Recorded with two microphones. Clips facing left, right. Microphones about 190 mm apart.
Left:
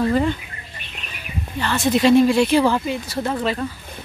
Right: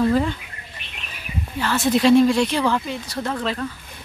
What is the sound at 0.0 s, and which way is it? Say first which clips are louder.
Speech: even; centre (ahead or behind).